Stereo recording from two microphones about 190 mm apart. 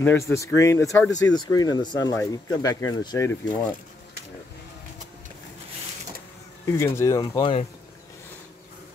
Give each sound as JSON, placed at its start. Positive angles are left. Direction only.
{"t": 0.0, "sound": "speech", "side_deg": 15}
{"t": 6.6, "sound": "speech", "side_deg": 15}